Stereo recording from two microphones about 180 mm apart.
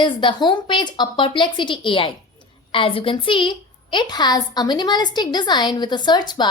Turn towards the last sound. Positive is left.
turn(degrees=25)  # may be behind; listen again after turning